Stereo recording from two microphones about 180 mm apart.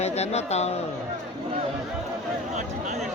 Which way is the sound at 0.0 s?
35° left (ahead or behind).